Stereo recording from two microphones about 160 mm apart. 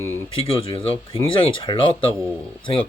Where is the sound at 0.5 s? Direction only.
35° left (ahead or behind).